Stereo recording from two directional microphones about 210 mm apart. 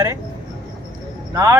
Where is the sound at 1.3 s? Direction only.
15° right (ahead or behind).